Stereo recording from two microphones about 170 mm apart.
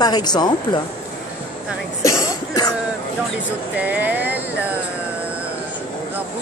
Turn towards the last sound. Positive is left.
turn(degrees=-10)  # may be behind; listen again after turning